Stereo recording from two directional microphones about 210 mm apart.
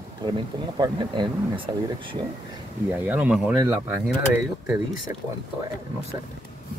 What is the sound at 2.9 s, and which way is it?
Speech, 10° right (ahead or behind).